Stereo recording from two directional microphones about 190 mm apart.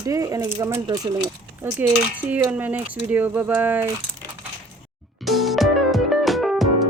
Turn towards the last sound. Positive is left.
turn(degrees=0)  # may be behind; listen again after turning